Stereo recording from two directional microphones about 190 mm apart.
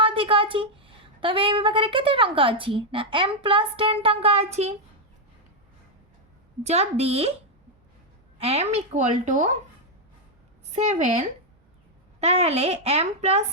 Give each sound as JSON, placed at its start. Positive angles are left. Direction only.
{"t": 0.0, "sound": "a woman's voice", "side_deg": -30}
{"t": 6.6, "sound": "a woman's voice", "side_deg": -35}
{"t": 8.4, "sound": "a woman's voice", "side_deg": -35}
{"t": 10.7, "sound": "a woman's voice", "side_deg": -35}